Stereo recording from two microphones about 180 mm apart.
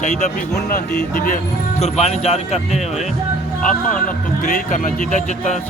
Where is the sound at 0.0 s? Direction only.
45° left (ahead or behind).